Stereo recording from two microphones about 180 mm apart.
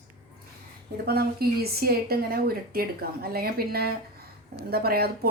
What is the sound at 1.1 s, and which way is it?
Speech, 60° right (ahead or behind).